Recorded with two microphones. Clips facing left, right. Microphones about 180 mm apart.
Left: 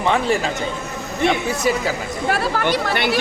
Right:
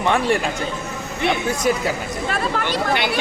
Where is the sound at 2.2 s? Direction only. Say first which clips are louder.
Left 4 dB; 55° left (ahead or behind).